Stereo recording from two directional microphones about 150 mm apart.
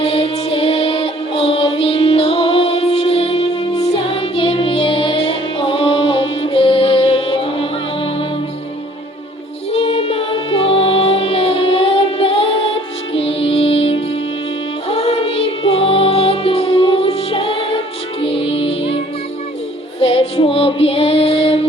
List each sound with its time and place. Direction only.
0.0 s music: 40° left (ahead or behind)
9.7 s music: 45° left (ahead or behind)
20.0 s female singing: 40° left (ahead or behind)